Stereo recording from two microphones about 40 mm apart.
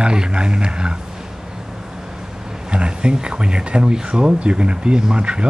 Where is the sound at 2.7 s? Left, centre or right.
Right.